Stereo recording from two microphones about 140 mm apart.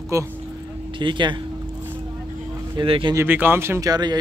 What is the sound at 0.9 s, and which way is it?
Speech, 35° right (ahead or behind).